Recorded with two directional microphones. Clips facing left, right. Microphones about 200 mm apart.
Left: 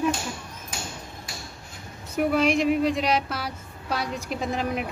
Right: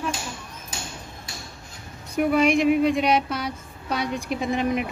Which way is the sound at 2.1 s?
Centre (ahead or behind).